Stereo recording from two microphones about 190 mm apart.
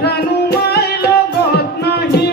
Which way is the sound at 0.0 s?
60° left (ahead or behind).